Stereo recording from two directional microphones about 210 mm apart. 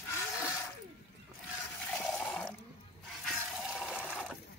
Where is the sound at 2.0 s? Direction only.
5° left (ahead or behind).